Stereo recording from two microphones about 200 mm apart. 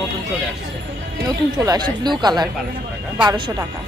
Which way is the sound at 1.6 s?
15° right (ahead or behind).